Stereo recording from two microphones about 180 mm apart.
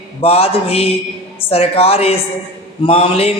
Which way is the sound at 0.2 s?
35° left (ahead or behind).